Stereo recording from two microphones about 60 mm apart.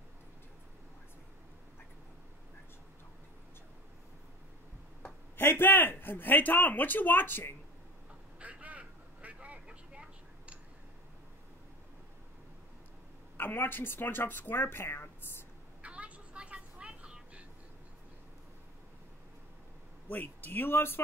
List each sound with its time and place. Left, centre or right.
5.4 s speech: left
8.4 s vehicle: right
13.4 s speech: left
15.8 s vehicle: right
20.1 s speech: left